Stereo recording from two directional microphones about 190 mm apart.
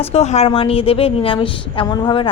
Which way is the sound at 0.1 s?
35° left (ahead or behind).